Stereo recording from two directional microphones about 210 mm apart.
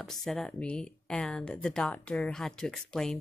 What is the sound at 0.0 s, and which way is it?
Speech, centre (ahead or behind).